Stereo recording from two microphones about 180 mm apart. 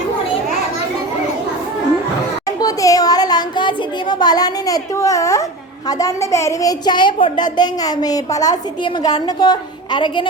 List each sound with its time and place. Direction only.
2.6 s speech: 20° left (ahead or behind)